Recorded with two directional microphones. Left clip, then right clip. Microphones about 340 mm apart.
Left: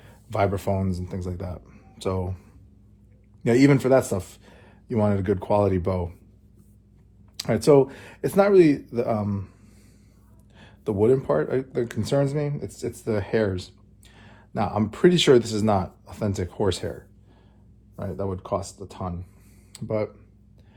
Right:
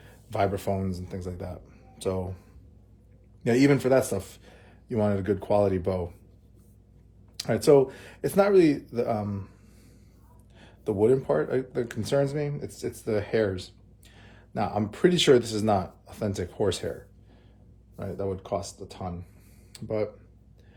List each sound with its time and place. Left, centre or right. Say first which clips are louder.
0.0 s speech: left 3 dB; centre
7.3 s speech: left 2 dB; centre
10.6 s speech: left 1 dB; centre